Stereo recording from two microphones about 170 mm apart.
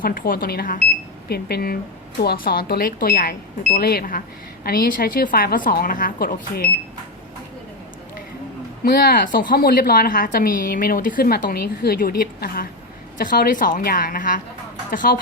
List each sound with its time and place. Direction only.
0.0 s a woman's voice: 55° left (ahead or behind)
8.8 s a woman's voice: 60° left (ahead or behind)